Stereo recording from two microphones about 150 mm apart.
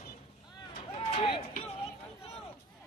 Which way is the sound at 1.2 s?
30° left (ahead or behind).